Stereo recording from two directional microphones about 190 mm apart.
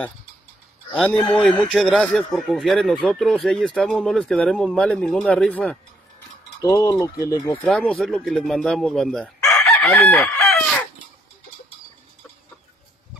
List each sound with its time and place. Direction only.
0.9 s speech: centre (ahead or behind)
6.6 s speech: 15° left (ahead or behind)
7.6 s speech: 5° left (ahead or behind)